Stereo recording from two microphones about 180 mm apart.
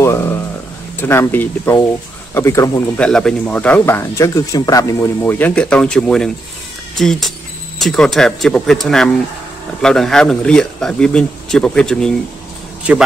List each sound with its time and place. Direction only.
0.0 s a sound: 15° left (ahead or behind)
0.9 s speech: 15° left (ahead or behind)
3.0 s speech: 5° left (ahead or behind)